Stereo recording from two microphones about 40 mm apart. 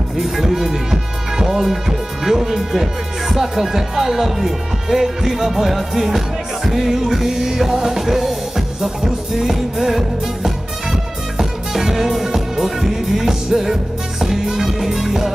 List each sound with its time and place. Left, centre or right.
0.2 s music: centre
1.4 s speech: centre
14.2 s music: centre